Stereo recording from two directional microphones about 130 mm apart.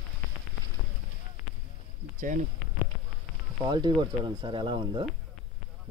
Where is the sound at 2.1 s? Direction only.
90° right.